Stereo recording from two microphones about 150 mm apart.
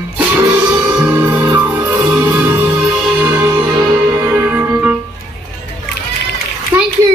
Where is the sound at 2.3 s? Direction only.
15° right (ahead or behind).